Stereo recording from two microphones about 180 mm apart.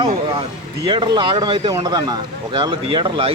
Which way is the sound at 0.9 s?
25° right (ahead or behind).